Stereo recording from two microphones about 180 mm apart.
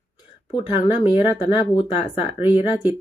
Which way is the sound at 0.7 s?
40° left (ahead or behind).